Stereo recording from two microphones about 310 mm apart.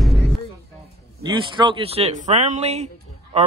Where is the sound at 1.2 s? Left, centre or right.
Centre.